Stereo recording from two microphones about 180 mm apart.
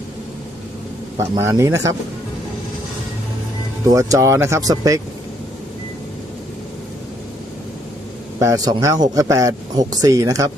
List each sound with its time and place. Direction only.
1.2 s speech: 15° right (ahead or behind)
3.8 s speech: 20° right (ahead or behind)
8.4 s speech: 20° right (ahead or behind)